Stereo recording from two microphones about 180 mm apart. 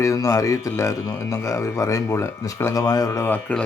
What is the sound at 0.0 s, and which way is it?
A man's voice, 15° left (ahead or behind).